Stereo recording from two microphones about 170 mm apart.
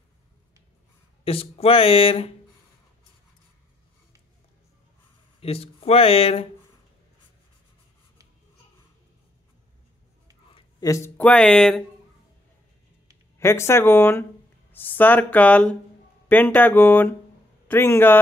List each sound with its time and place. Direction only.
1.2 s speech: 35° left (ahead or behind)
5.4 s speech: 35° left (ahead or behind)
10.5 s speech: 20° left (ahead or behind); by 11.8 s 5° left (ahead or behind)
13.4 s speech: 15° left (ahead or behind)